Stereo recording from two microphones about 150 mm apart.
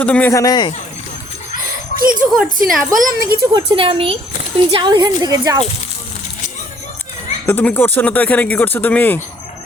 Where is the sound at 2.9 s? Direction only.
85° right.